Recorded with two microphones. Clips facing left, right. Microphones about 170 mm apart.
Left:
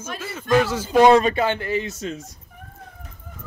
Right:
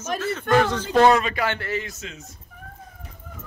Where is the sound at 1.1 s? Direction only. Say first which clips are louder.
Left 5 dB; 30° left (ahead or behind).